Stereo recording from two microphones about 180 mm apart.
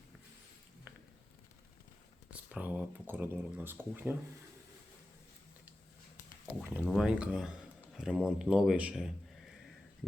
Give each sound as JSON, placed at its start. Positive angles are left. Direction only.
{"t": 2.3, "sound": "speech", "side_deg": -5}
{"t": 6.6, "sound": "speech", "side_deg": -10}